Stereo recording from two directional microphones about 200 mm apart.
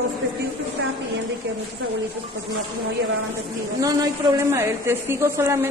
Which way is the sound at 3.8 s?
20° right (ahead or behind).